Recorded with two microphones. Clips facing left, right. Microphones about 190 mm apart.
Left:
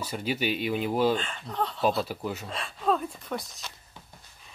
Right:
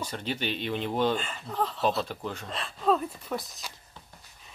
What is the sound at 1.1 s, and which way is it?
Speech, 5° right (ahead or behind).